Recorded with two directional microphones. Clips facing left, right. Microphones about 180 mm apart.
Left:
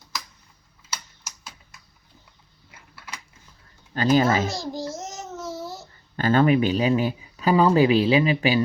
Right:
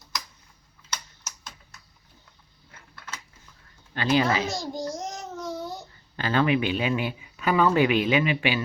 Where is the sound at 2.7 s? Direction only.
10° left (ahead or behind).